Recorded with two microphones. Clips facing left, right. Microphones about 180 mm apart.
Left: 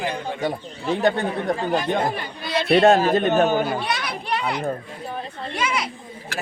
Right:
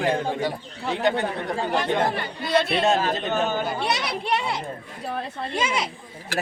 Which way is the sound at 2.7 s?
60° left (ahead or behind).